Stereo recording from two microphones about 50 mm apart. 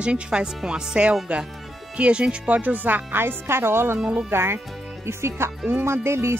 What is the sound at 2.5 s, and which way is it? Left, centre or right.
Speech, right.